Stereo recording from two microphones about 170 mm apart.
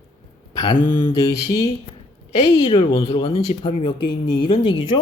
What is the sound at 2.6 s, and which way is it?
A man's voice, 30° left (ahead or behind).